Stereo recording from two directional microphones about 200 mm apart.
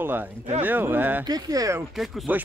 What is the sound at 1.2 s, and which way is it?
Speech, 20° right (ahead or behind).